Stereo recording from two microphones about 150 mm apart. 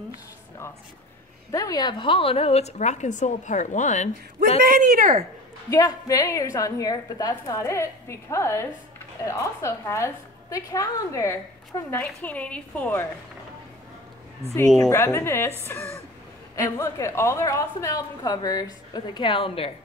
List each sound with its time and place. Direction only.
1.5 s a woman's voice: 25° left (ahead or behind); by 4.1 s 55° left (ahead or behind)
4.6 s speech: 75° right (ahead or behind)
5.7 s a woman's voice: 25° left (ahead or behind)
14.8 s a woman's voice: 20° left (ahead or behind); by 19.7 s 35° left (ahead or behind)